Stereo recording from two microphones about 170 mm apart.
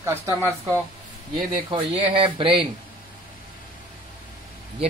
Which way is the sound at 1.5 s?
30° right (ahead or behind).